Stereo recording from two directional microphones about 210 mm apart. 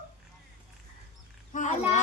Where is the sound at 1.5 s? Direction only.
35° left (ahead or behind).